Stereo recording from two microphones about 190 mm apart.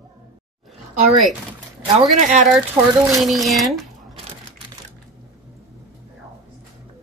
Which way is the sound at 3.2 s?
Centre (ahead or behind).